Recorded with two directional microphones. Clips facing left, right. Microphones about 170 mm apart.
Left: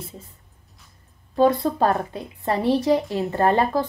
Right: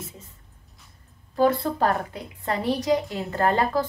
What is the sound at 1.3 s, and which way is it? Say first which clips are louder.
A woman's voice: left 3 dB; 20° left (ahead or behind).